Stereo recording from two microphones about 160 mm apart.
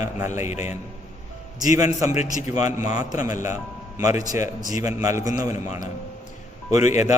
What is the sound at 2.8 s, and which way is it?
A man's voice, 20° right (ahead or behind).